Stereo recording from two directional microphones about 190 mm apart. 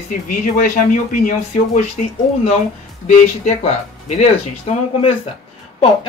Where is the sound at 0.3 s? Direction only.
45° left (ahead or behind).